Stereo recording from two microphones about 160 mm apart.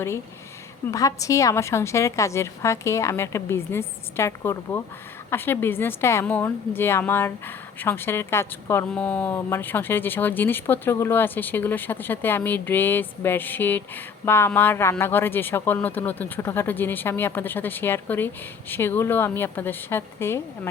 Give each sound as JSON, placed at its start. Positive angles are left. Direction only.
{"t": 0.9, "sound": "a woman's voice", "side_deg": 20}